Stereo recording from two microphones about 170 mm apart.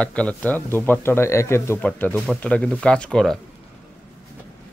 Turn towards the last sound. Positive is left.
turn(degrees=5)  # may be behind; listen again after turning